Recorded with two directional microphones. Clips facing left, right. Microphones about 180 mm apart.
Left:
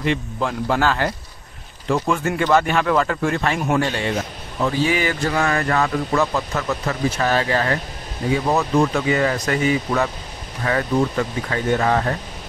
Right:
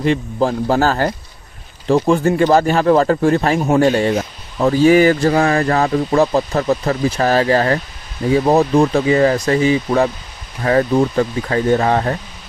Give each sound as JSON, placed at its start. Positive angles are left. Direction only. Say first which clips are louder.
{"t": 0.0, "sound": "speech", "louder": "right 6 dB", "side_deg": -35}